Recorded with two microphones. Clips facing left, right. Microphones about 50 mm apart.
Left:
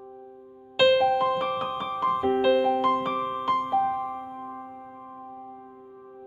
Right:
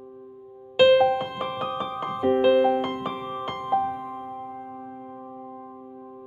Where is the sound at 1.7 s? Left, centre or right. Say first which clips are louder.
Right 1 dB; centre.